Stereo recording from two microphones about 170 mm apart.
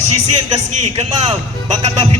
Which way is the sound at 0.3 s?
40° right (ahead or behind).